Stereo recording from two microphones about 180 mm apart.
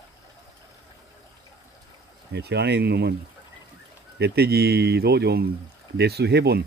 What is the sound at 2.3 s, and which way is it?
Speech, 70° right (ahead or behind).